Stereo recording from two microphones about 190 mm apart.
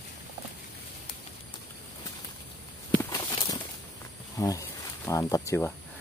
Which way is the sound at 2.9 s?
20° left (ahead or behind).